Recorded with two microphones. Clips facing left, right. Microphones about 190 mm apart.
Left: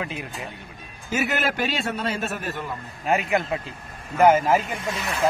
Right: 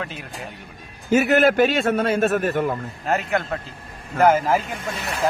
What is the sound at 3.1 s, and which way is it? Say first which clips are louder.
A man's voice: even; 10° left (ahead or behind).